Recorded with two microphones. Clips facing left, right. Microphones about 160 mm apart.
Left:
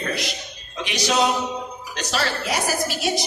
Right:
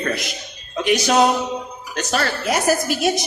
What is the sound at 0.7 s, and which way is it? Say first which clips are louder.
A woman's voice: right 6 dB; 50° right (ahead or behind).